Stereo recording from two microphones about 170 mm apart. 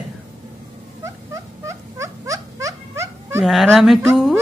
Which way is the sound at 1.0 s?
15° right (ahead or behind).